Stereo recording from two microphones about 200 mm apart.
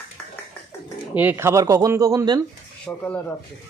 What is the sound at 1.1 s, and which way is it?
Speech, 10° right (ahead or behind).